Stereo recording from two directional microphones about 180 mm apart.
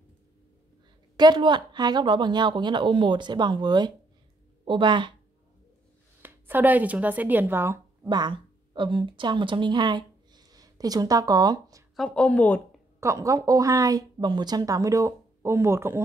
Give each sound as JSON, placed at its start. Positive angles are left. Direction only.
{"t": 1.1, "sound": "a woman's voice", "side_deg": -25}
{"t": 6.2, "sound": "speech", "side_deg": -10}
{"t": 12.0, "sound": "speech", "side_deg": 5}
{"t": 13.0, "sound": "speech", "side_deg": -15}